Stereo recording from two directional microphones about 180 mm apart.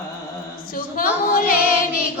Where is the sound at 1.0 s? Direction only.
50° left (ahead or behind).